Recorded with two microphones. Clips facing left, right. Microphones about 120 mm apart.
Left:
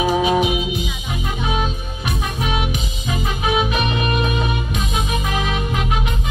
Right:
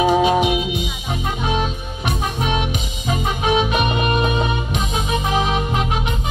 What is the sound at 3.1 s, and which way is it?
Music, 30° right (ahead or behind).